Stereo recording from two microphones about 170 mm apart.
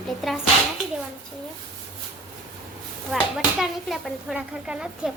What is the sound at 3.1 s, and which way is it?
Speech, centre (ahead or behind).